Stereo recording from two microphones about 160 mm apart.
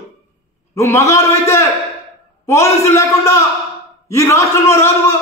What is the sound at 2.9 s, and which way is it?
A man's voice, 20° left (ahead or behind).